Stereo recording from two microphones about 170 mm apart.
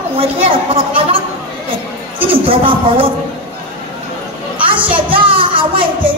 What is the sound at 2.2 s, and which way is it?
Speech, 30° right (ahead or behind).